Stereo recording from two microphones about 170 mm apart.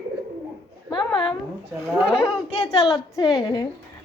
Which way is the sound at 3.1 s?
25° left (ahead or behind).